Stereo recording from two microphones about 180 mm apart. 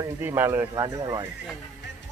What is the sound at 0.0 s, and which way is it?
Speech, 15° right (ahead or behind).